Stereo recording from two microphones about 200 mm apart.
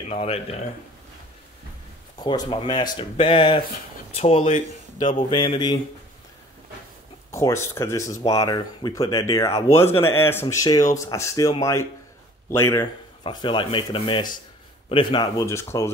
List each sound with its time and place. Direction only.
0.1 s speech: 30° left (ahead or behind)
2.1 s speech: 20° left (ahead or behind)
5.3 s speech: 20° left (ahead or behind)
7.2 s speech: 15° left (ahead or behind)